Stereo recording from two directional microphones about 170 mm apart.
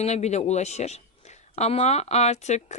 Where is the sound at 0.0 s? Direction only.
40° left (ahead or behind).